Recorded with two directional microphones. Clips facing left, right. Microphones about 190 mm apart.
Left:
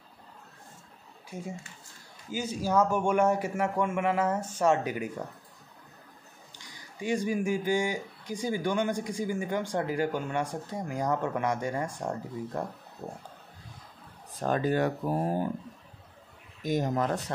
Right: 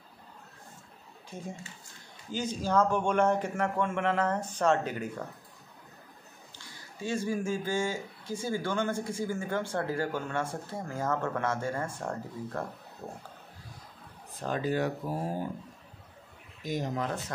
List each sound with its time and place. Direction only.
1.3 s speech: 10° left (ahead or behind)
6.5 s speech: 15° left (ahead or behind)
14.4 s speech: 50° left (ahead or behind)
16.6 s speech: 50° left (ahead or behind)